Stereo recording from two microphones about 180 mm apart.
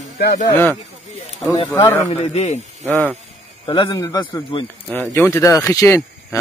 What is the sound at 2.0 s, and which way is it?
Speech, 40° left (ahead or behind).